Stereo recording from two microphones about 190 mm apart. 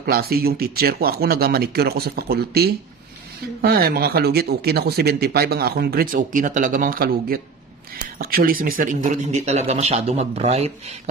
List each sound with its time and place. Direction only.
0.0 s speech: 55° right (ahead or behind); by 11.0 s 35° right (ahead or behind)